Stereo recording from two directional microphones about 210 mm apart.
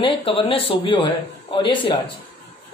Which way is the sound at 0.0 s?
25° left (ahead or behind).